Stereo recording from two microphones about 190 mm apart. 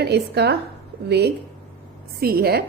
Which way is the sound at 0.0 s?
60° right (ahead or behind).